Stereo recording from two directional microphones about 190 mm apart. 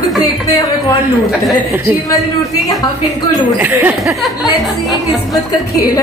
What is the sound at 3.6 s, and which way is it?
Speech, 10° right (ahead or behind).